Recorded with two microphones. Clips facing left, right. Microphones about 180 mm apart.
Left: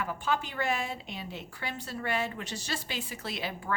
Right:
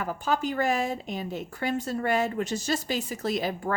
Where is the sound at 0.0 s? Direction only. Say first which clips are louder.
Right 4 dB; 40° right (ahead or behind).